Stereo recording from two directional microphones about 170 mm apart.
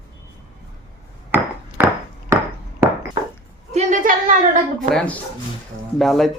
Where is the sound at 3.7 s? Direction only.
40° right (ahead or behind).